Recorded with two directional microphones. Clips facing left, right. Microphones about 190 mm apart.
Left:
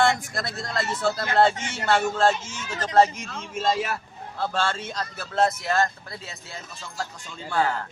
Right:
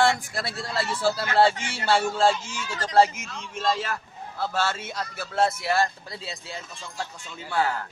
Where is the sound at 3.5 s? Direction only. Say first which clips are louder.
Left 2 dB; 10° left (ahead or behind).